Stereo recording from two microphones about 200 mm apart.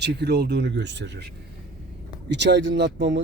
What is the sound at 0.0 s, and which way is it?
Speech, 55° right (ahead or behind).